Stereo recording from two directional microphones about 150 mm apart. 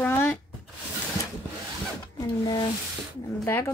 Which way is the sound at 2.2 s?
25° left (ahead or behind).